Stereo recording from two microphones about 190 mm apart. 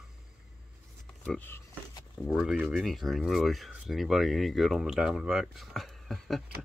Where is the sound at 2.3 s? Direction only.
Centre (ahead or behind).